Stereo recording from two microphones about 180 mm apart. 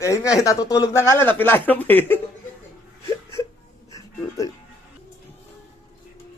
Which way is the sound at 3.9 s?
20° left (ahead or behind).